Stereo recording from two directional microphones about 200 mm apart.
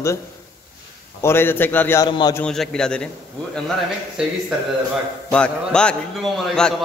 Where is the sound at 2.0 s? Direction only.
25° left (ahead or behind).